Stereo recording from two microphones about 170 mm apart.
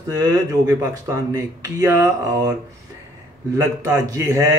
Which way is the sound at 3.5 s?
20° right (ahead or behind).